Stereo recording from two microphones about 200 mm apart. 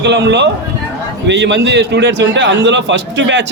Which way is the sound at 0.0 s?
60° right (ahead or behind).